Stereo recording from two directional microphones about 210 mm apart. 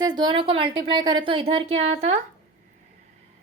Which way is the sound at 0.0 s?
20° right (ahead or behind).